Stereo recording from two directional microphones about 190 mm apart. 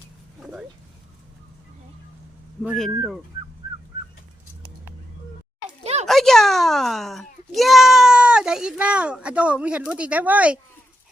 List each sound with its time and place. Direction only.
2.6 s a child's voice: centre (ahead or behind)
5.8 s a sound: 35° right (ahead or behind)
6.1 s a child's voice: centre (ahead or behind)